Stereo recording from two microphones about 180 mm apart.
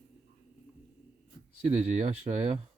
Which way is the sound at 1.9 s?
40° right (ahead or behind).